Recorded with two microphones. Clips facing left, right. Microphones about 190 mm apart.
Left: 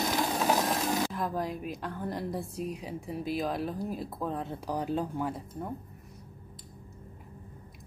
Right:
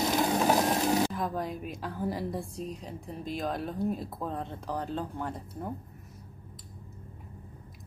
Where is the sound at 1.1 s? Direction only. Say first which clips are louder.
Even; centre (ahead or behind).